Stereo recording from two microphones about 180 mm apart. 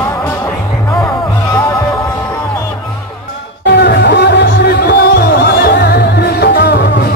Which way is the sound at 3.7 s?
70° left (ahead or behind).